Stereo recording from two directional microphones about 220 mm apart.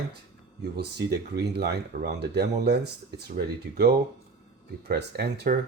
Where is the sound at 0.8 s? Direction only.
50° right (ahead or behind).